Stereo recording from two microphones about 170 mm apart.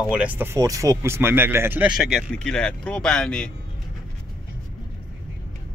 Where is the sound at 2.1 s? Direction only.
5° left (ahead or behind).